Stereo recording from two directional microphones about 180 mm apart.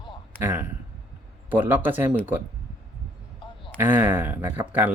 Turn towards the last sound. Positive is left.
turn(degrees=-10)  # may be behind; listen again after turning